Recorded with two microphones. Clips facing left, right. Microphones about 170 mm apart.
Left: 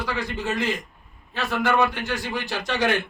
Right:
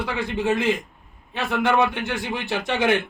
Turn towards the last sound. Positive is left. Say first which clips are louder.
# right 2 dB
turn(degrees=-25)  # may be behind; listen again after turning